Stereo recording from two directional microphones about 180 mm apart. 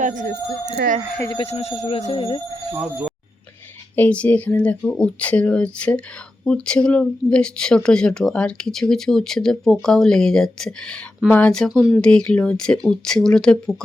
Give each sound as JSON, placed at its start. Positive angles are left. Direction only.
{"t": 0.0, "sound": "speech", "side_deg": -45}
{"t": 1.2, "sound": "speech", "side_deg": 25}
{"t": 1.5, "sound": "speech", "side_deg": 35}
{"t": 2.7, "sound": "speech", "side_deg": -10}
{"t": 3.9, "sound": "speech", "side_deg": 10}